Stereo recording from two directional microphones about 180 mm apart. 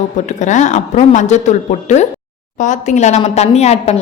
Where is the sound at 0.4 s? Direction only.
40° left (ahead or behind).